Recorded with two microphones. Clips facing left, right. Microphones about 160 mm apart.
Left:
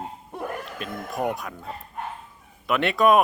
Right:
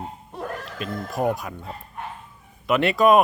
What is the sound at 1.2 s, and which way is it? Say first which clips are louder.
Speech: right 3 dB; 20° right (ahead or behind).